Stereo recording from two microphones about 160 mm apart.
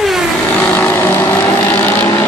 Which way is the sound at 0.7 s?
15° left (ahead or behind).